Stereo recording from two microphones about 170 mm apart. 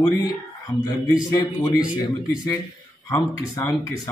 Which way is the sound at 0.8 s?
20° left (ahead or behind).